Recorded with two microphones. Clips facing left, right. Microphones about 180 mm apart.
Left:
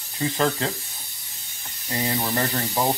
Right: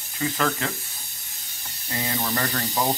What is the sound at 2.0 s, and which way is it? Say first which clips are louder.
Speech: left 2 dB; 25° left (ahead or behind).